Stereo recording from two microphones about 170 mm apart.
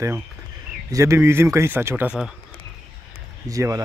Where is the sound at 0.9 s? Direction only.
15° right (ahead or behind).